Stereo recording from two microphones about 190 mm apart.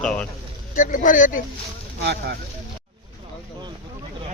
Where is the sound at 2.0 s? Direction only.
55° right (ahead or behind).